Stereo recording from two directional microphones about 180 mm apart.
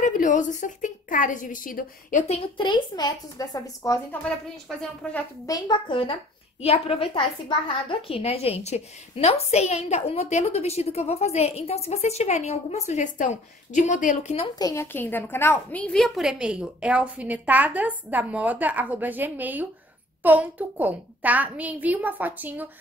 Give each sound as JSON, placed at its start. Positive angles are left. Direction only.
{"t": 0.0, "sound": "a woman's voice", "side_deg": 45}
{"t": 4.2, "sound": "a woman's voice", "side_deg": 5}
{"t": 5.5, "sound": "a child's voice", "side_deg": 25}
{"t": 14.5, "sound": "a woman's voice", "side_deg": 20}